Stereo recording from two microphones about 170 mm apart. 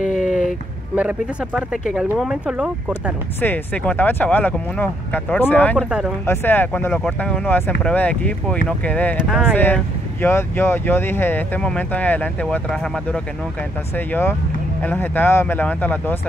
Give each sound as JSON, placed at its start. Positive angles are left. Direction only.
{"t": 0.0, "sound": "a sound", "side_deg": 50}
{"t": 0.9, "sound": "speech", "side_deg": -5}
{"t": 2.9, "sound": "speech", "side_deg": 10}
{"t": 5.9, "sound": "speech", "side_deg": -5}
{"t": 6.2, "sound": "speech", "side_deg": 15}
{"t": 9.2, "sound": "speech", "side_deg": -5}
{"t": 9.5, "sound": "speech", "side_deg": 10}